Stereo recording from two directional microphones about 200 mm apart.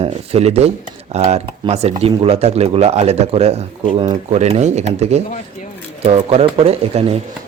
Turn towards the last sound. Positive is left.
turn(degrees=-30)  # may be behind; listen again after turning